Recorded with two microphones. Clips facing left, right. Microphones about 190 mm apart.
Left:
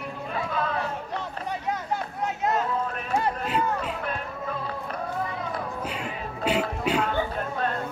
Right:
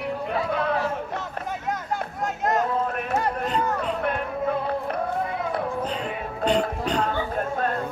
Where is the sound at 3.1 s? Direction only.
5° left (ahead or behind).